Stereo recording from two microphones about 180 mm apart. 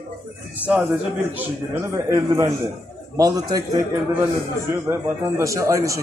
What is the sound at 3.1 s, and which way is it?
Speech, 20° right (ahead or behind).